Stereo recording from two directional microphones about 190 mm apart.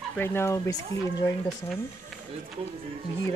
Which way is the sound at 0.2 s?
10° left (ahead or behind).